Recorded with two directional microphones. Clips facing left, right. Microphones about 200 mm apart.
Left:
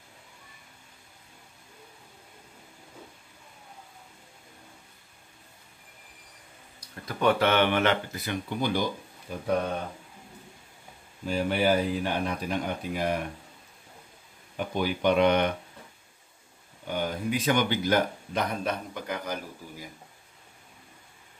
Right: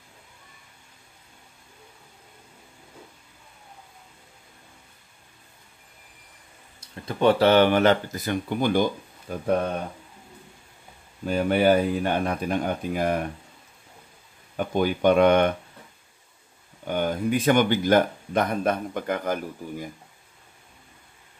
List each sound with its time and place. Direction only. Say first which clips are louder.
6.8 s speech: right 5 dB; 30° right (ahead or behind); by 9.4 s 50° right (ahead or behind)
11.2 s speech: right 5 dB; 55° right (ahead or behind)
14.6 s speech: right 5 dB; 50° right (ahead or behind)
16.8 s speech: right 5 dB; 55° right (ahead or behind)